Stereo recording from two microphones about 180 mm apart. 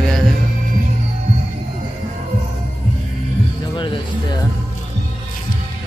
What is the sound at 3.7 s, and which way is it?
Speech, 25° left (ahead or behind).